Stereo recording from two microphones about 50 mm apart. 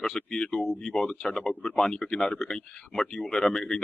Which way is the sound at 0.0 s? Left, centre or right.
Centre.